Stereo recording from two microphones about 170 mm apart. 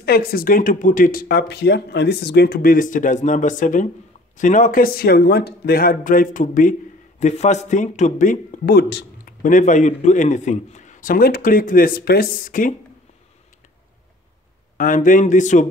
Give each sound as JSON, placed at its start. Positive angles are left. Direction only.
{"t": 0.0, "sound": "a man's voice", "side_deg": 65}
{"t": 9.4, "sound": "a man's voice", "side_deg": 50}
{"t": 14.8, "sound": "a man's voice", "side_deg": 50}